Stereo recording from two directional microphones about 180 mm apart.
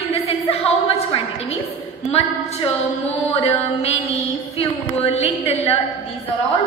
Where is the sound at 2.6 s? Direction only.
35° left (ahead or behind).